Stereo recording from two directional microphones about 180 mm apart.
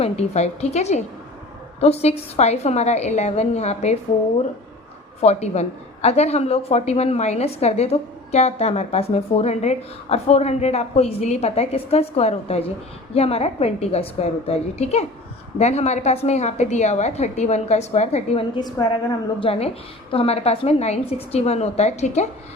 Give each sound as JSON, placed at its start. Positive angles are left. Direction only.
{"t": 0.0, "sound": "a woman's voice", "side_deg": 35}
{"t": 5.2, "sound": "a woman's voice", "side_deg": 35}
{"t": 18.5, "sound": "a woman's voice", "side_deg": 25}